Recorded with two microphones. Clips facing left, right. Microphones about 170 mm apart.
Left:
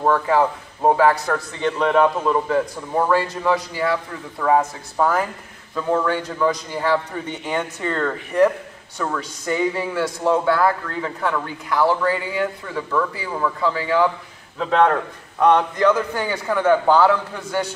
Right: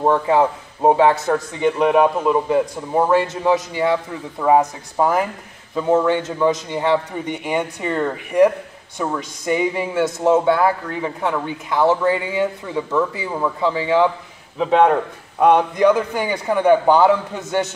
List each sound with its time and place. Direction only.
0.0 s a man's voice: 20° right (ahead or behind)